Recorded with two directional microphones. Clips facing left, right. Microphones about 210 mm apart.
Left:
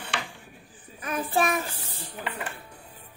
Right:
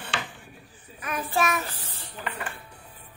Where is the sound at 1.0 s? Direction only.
30° left (ahead or behind).